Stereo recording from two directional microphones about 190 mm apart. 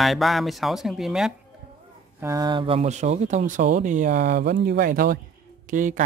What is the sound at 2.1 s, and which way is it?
Speech, 15° right (ahead or behind).